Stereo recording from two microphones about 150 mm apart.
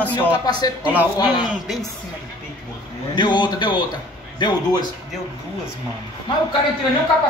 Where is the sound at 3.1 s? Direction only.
30° left (ahead or behind).